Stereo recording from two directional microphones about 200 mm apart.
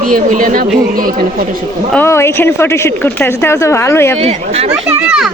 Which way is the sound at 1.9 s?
10° left (ahead or behind).